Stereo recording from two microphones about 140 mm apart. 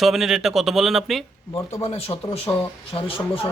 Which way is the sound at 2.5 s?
25° left (ahead or behind).